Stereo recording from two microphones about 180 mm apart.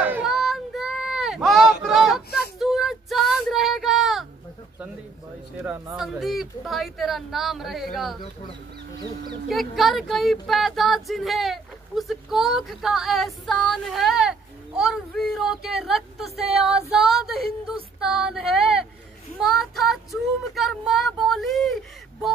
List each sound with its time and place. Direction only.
0.0 s a sound: 5° right (ahead or behind)
2.6 s child singing: centre (ahead or behind)
5.9 s speech: centre (ahead or behind)
9.5 s speech: centre (ahead or behind)
17.0 s a sound: centre (ahead or behind)
18.0 s speech: 5° right (ahead or behind)
19.4 s child singing: centre (ahead or behind)